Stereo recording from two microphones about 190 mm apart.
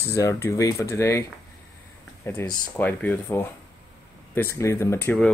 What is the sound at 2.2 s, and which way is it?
Speech, 10° left (ahead or behind).